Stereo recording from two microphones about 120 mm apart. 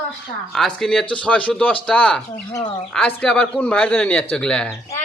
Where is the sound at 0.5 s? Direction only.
Centre (ahead or behind).